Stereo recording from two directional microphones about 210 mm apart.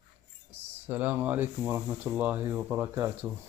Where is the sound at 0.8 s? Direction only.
10° right (ahead or behind).